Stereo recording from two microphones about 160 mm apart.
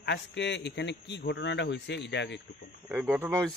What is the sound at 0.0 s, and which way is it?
A man's voice, 90° left.